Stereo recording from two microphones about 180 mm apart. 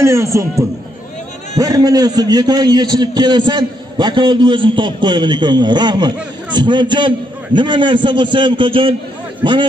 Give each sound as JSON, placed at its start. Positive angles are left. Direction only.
{"t": 0.0, "sound": "a man's voice", "side_deg": -15}